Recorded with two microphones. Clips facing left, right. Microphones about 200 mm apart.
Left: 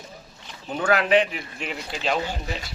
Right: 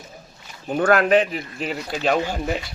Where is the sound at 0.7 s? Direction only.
50° right (ahead or behind).